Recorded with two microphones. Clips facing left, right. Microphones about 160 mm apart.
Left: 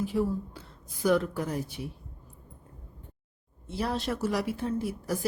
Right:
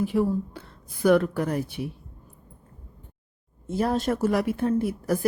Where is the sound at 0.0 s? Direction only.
60° right (ahead or behind).